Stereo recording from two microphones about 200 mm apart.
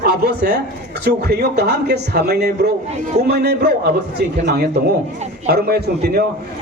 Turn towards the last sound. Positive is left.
turn(degrees=-50)  # may be behind; listen again after turning